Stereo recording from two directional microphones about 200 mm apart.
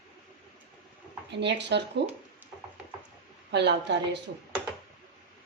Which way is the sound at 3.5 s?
60° right (ahead or behind).